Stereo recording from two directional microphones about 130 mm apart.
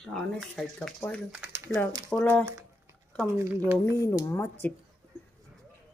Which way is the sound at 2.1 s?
10° left (ahead or behind).